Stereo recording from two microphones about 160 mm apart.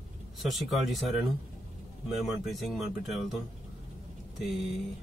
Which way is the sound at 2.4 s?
Centre (ahead or behind).